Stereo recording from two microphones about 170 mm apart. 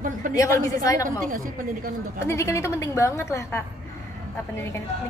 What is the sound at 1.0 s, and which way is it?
Speech, 50° right (ahead or behind).